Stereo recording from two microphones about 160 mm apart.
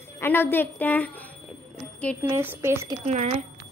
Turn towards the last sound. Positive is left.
turn(degrees=-45)  # may be behind; listen again after turning